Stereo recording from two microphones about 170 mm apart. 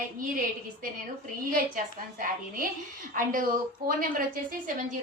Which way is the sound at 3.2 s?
55° right (ahead or behind).